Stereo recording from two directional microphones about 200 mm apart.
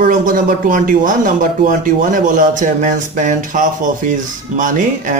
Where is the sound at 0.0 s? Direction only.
40° right (ahead or behind).